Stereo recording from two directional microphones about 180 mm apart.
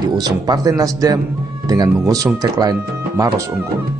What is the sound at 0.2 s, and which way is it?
A man's voice, 20° right (ahead or behind).